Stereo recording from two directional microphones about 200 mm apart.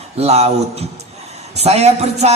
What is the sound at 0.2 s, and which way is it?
Music, 30° right (ahead or behind).